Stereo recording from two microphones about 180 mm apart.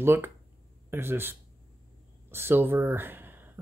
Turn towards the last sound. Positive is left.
turn(degrees=-10)  # may be behind; listen again after turning